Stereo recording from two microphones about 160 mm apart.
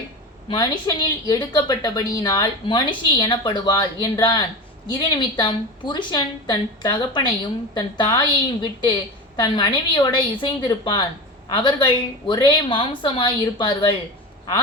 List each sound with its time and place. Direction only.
0.4 s a woman's voice: 30° left (ahead or behind)